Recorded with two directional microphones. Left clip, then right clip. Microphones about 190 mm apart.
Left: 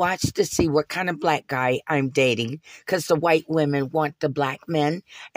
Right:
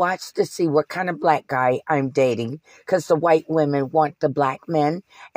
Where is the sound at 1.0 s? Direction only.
35° left (ahead or behind).